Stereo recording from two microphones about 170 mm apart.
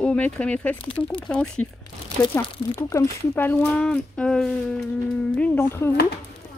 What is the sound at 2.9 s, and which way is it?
Speech, 10° left (ahead or behind).